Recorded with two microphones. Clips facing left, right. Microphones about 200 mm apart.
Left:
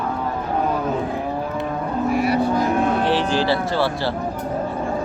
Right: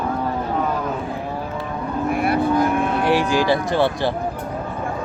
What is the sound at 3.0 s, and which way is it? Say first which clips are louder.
A man's voice: right 1 dB; 10° right (ahead or behind).